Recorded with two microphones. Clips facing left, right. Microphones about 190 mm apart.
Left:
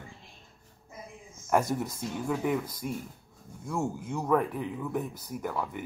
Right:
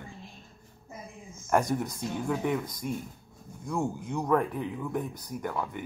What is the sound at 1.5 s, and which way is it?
Speech, 5° left (ahead or behind).